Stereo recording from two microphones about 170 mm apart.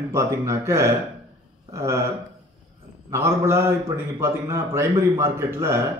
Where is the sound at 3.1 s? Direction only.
15° right (ahead or behind).